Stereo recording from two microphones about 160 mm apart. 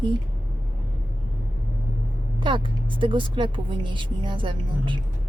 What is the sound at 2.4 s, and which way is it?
Speech, 30° right (ahead or behind).